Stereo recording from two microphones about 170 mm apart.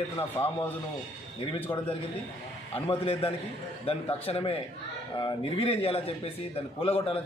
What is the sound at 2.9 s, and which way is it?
A man's voice, 35° left (ahead or behind).